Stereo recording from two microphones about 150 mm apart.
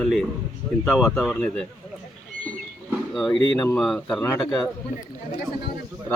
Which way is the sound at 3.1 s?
Centre (ahead or behind).